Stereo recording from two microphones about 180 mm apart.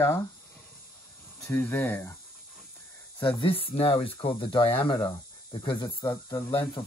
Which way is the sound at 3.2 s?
30° left (ahead or behind).